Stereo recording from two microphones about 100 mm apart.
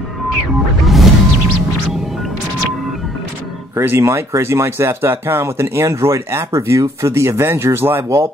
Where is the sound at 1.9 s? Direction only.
Centre (ahead or behind).